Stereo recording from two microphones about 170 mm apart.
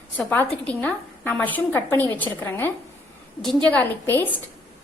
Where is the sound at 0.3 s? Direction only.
10° left (ahead or behind).